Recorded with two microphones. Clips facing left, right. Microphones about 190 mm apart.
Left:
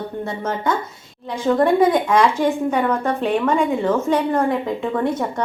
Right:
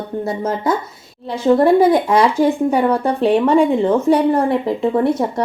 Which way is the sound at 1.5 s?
30° right (ahead or behind).